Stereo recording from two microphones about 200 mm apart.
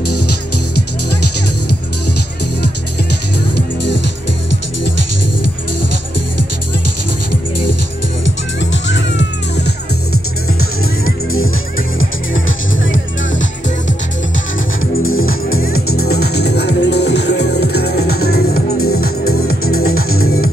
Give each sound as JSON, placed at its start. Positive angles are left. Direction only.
{"t": 3.5, "sound": "music", "side_deg": 60}
{"t": 8.5, "sound": "music", "side_deg": 65}
{"t": 12.0, "sound": "music", "side_deg": 75}
{"t": 15.1, "sound": "music", "side_deg": 45}